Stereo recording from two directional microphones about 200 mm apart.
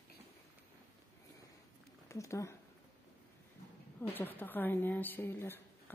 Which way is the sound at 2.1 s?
15° left (ahead or behind).